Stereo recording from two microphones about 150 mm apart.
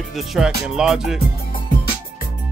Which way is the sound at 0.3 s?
5° right (ahead or behind).